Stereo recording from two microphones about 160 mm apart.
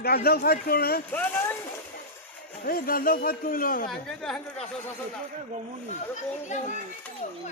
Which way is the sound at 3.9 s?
5° left (ahead or behind).